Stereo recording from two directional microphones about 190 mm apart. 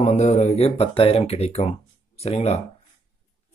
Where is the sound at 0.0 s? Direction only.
35° left (ahead or behind).